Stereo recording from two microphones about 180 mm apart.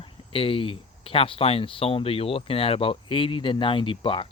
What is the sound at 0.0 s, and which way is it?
Speech, 30° left (ahead or behind).